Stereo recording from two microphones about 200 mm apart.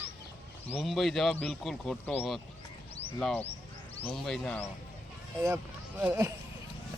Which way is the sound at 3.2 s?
5° left (ahead or behind).